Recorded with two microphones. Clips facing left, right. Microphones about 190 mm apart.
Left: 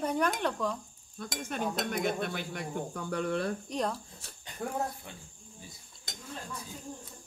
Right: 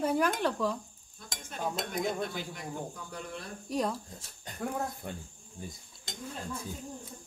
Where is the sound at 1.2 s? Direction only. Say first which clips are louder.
Left 4 dB; 65° left (ahead or behind).